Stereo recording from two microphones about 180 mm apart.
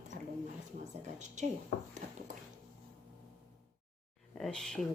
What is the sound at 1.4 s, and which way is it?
Speech, 40° right (ahead or behind).